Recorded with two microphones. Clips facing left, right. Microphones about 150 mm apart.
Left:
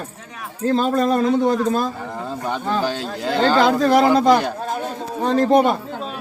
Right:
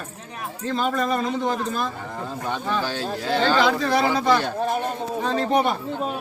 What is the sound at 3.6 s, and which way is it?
Speech, 45° left (ahead or behind).